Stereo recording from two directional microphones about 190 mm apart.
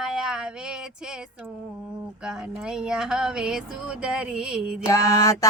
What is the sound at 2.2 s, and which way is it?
Speech, 5° right (ahead or behind).